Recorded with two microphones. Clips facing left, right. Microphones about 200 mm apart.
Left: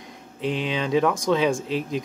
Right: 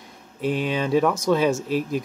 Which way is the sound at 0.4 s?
10° right (ahead or behind).